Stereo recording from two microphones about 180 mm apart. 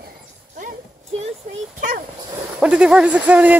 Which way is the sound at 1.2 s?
40° right (ahead or behind).